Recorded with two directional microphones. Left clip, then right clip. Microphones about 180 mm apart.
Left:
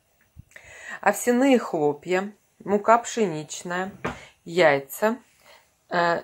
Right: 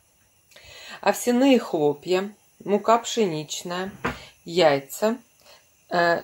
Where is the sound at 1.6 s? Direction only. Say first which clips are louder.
Right 1 dB; 10° left (ahead or behind).